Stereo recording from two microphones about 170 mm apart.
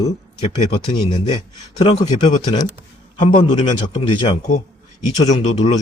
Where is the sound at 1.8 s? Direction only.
45° left (ahead or behind).